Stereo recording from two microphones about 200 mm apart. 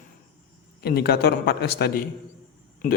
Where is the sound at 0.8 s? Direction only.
50° left (ahead or behind).